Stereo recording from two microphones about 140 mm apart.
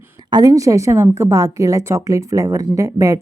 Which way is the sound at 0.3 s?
30° right (ahead or behind).